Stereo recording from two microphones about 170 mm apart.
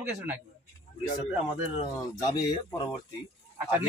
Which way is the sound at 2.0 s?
20° left (ahead or behind).